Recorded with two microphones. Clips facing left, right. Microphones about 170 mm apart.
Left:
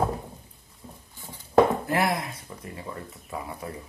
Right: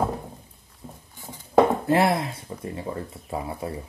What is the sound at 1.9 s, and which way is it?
Speech, 25° right (ahead or behind).